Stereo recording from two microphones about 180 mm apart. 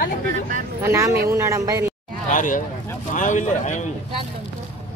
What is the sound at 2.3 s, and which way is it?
Speech, 45° left (ahead or behind).